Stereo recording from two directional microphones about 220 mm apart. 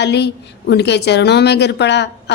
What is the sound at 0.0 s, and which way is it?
Speech, 50° left (ahead or behind).